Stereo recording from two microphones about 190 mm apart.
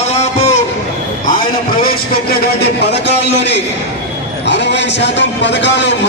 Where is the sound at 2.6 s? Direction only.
65° left (ahead or behind).